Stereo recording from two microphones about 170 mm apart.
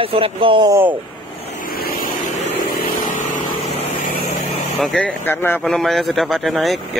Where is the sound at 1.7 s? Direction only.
60° left (ahead or behind).